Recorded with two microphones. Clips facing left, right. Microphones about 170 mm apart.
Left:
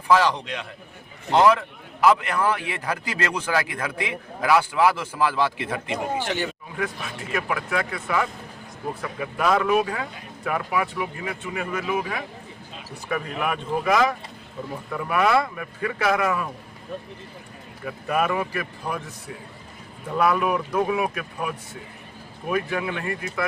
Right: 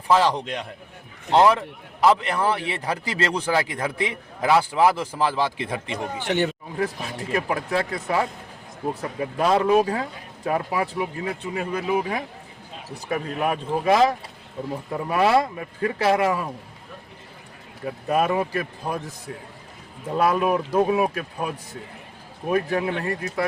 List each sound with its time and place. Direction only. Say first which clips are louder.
0.1 s a man's voice: even; 30° right (ahead or behind)
6.2 s speech: right 4 dB; 60° right (ahead or behind)
6.7 s a man's voice: right 2 dB; 35° right (ahead or behind)
17.8 s speech: right 2 dB; 30° right (ahead or behind)
20.1 s a man's voice: right 1 dB; 30° right (ahead or behind)